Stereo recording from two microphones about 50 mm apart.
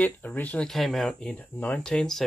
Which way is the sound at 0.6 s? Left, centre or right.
Centre.